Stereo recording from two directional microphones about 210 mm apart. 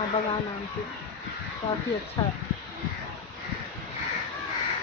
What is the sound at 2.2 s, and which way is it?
Speech, 20° left (ahead or behind).